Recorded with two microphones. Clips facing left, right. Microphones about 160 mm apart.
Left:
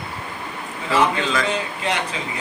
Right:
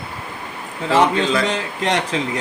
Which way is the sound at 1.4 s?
90° right.